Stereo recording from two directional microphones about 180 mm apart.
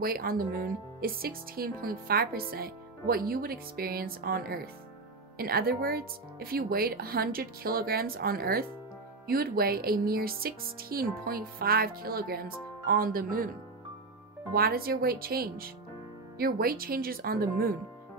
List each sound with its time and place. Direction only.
0.0 s speech: 55° right (ahead or behind)
14.5 s speech: 55° right (ahead or behind)